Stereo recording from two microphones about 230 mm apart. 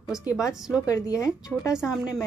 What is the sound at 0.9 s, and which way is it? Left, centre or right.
Speech, centre.